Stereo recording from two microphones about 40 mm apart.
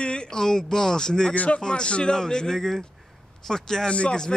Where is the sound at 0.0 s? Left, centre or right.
Left.